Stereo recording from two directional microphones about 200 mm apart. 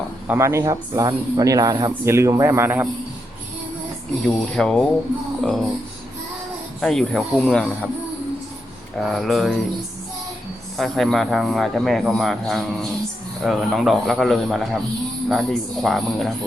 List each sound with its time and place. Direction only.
0.3 s a man's voice: 15° right (ahead or behind)
4.5 s speech: 5° left (ahead or behind)
5.4 s a sound: centre (ahead or behind)
6.8 s speech: centre (ahead or behind)
9.0 s speech: centre (ahead or behind)
10.8 s speech: centre (ahead or behind)